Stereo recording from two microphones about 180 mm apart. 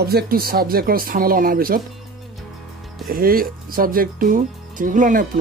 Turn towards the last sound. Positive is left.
turn(degrees=-50)  # may be behind; listen again after turning